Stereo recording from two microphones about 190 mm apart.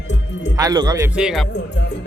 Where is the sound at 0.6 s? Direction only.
20° right (ahead or behind).